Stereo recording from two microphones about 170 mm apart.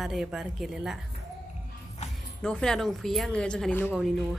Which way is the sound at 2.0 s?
40° left (ahead or behind).